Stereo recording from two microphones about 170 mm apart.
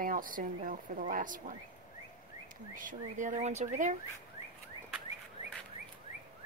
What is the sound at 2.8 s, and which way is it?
Speech, 50° right (ahead or behind).